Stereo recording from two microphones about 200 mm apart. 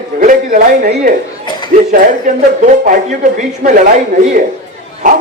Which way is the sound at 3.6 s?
45° right (ahead or behind).